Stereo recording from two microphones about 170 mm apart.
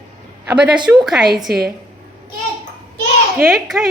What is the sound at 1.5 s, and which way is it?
Speech, 70° right (ahead or behind).